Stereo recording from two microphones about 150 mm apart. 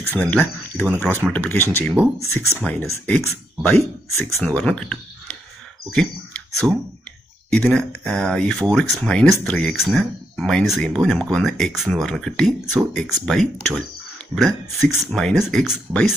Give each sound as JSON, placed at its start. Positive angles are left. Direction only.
{"t": 0.0, "sound": "speech", "side_deg": 10}
{"t": 3.6, "sound": "speech", "side_deg": 15}
{"t": 4.4, "sound": "speech", "side_deg": 5}